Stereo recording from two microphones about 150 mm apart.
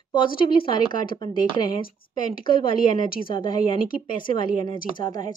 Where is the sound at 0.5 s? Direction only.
35° left (ahead or behind).